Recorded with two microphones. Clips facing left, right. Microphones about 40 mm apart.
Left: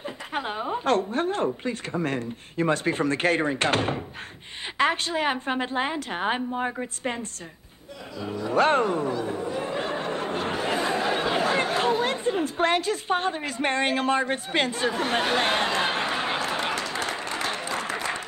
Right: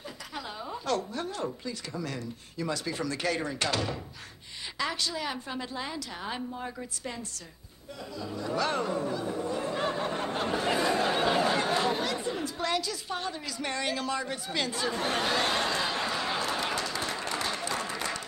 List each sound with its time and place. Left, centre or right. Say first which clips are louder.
0.0 s a woman's voice: left 9 dB; left
8.5 s a woman's voice: left 9 dB; left
9.2 s speech: left 3 dB; left
10.2 s a sound: left 2 dB; centre
11.3 s chatter: left 3 dB; left
12.0 s a woman's voice: left 6 dB; left
14.9 s speech: left 4 dB; left
16.4 s a sound: left 3 dB; left
17.4 s applause: left 3 dB; left